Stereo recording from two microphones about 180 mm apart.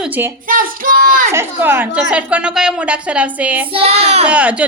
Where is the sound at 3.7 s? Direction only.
35° right (ahead or behind).